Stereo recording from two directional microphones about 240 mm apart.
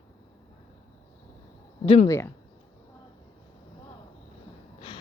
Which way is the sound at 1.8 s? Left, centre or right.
Left.